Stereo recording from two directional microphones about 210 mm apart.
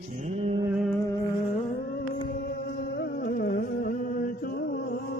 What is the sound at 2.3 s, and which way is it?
Music, 50° left (ahead or behind).